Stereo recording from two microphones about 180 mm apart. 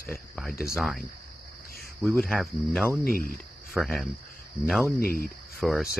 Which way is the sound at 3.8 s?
5° right (ahead or behind).